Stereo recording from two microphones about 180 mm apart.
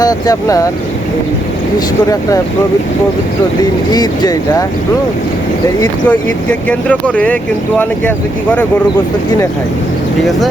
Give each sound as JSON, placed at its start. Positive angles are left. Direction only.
{"t": 0.0, "sound": "speech", "side_deg": 20}
{"t": 3.6, "sound": "speech", "side_deg": 20}
{"t": 6.1, "sound": "speech", "side_deg": 5}